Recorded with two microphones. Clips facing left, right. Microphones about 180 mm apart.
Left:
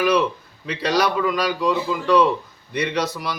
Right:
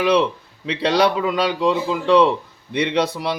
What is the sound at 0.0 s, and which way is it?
A man's voice, 25° right (ahead or behind).